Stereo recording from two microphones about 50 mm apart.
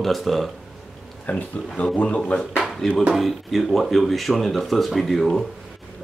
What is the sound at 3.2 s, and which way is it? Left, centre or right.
Speech, centre.